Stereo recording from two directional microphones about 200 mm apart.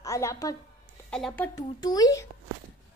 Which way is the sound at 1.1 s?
5° left (ahead or behind).